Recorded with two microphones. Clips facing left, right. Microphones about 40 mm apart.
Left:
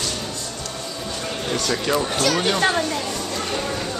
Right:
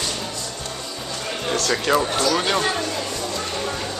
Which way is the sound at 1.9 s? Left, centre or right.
Centre.